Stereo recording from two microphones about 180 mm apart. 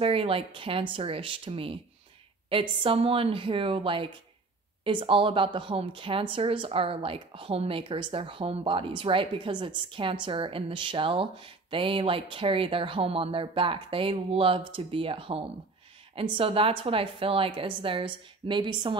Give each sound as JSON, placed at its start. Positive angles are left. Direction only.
{"t": 0.0, "sound": "speech", "side_deg": -30}